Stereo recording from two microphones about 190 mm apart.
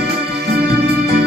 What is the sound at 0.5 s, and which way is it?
Music, 55° right (ahead or behind).